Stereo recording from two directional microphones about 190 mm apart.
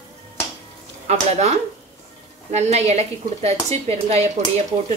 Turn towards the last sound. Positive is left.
turn(degrees=-35)  # may be behind; listen again after turning